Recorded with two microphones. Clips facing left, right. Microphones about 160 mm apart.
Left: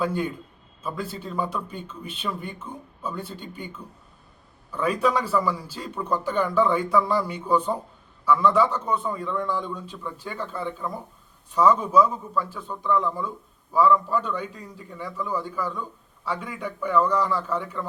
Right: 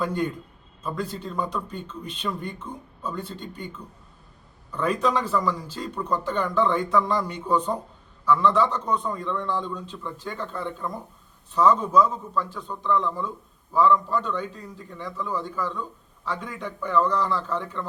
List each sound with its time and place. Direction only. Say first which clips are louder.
0.0 s speech: even; 5° left (ahead or behind)
4.7 s speech: left 1 dB; 10° left (ahead or behind)